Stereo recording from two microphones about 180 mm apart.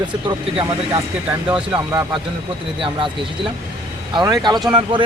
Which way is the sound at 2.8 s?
30° right (ahead or behind).